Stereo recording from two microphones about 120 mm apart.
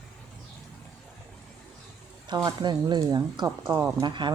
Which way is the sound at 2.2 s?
35° right (ahead or behind).